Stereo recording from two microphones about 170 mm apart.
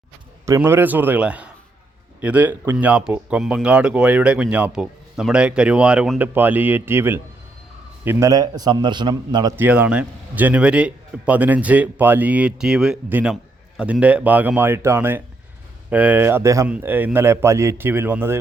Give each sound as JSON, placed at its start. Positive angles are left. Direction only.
{"t": 0.4, "sound": "a man's voice", "side_deg": -15}
{"t": 9.6, "sound": "speech", "side_deg": -10}